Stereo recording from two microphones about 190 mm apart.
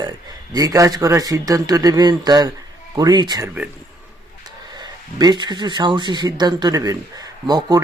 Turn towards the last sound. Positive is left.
turn(degrees=-20)  # may be behind; listen again after turning